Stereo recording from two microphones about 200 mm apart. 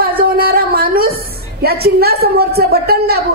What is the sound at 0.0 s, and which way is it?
Music, 45° right (ahead or behind).